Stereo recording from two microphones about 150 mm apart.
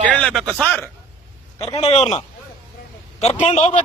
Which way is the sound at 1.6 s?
40° left (ahead or behind).